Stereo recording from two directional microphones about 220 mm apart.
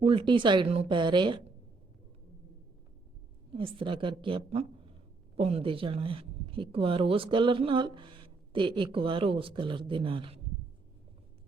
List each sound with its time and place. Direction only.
0.0 s speech: 25° right (ahead or behind)
3.5 s speech: 25° right (ahead or behind)